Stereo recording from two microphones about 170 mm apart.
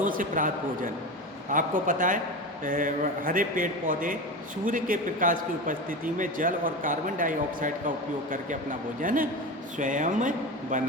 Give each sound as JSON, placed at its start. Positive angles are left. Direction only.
{"t": 0.0, "sound": "a man's voice", "side_deg": -50}